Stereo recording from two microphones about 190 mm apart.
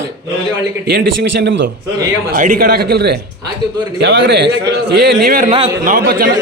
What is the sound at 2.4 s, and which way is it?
A man's voice, 45° right (ahead or behind).